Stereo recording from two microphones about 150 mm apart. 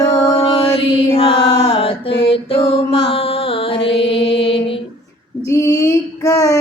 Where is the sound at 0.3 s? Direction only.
35° left (ahead or behind).